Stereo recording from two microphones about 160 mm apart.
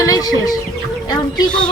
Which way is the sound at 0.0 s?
20° left (ahead or behind).